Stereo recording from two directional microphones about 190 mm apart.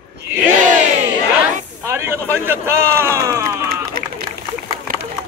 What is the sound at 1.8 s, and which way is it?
Speech, 15° right (ahead or behind).